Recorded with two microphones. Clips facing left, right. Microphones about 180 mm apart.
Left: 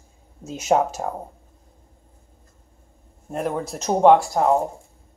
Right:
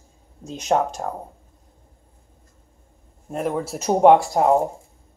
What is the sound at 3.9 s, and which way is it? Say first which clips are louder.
Speech: right 1 dB; 15° right (ahead or behind).